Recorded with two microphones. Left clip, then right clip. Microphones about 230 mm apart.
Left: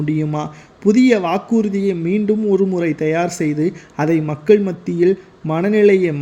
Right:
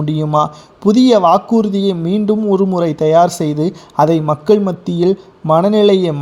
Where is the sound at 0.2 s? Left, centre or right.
Centre.